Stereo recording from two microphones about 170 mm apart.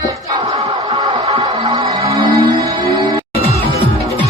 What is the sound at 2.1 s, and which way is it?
Music, 25° right (ahead or behind).